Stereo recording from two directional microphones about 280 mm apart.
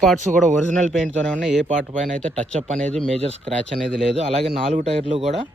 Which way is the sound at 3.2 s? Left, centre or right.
Right.